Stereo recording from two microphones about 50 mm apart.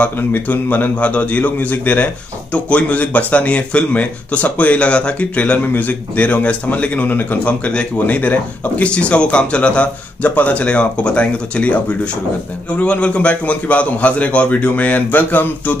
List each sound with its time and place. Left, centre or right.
0.0 s a man's voice: left